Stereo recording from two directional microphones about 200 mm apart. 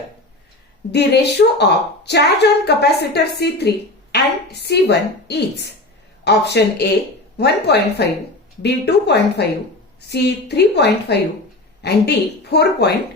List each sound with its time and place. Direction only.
0.9 s a woman's voice: 55° left (ahead or behind)